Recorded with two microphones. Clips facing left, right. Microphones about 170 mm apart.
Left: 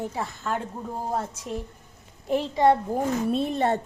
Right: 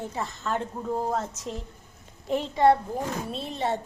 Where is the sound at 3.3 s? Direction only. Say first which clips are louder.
Left 6 dB; 55° left (ahead or behind).